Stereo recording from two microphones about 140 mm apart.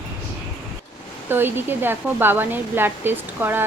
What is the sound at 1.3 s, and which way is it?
Speech, 15° right (ahead or behind).